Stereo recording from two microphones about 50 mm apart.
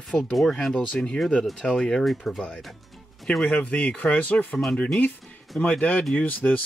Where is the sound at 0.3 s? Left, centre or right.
Centre.